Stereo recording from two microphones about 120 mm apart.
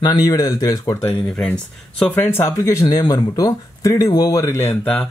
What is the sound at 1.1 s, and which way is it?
Speech, 5° left (ahead or behind).